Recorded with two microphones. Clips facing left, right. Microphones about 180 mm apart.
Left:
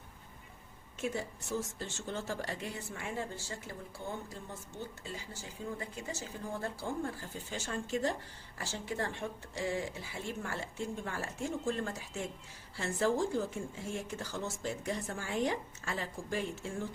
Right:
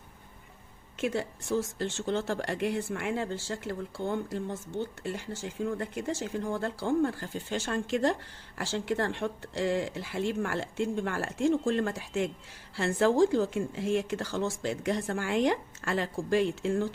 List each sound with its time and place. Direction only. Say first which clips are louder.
1.0 s speech: right 6 dB; 75° right (ahead or behind)
5.0 s speech: right 9 dB; 70° right (ahead or behind); by 16.9 s 90° right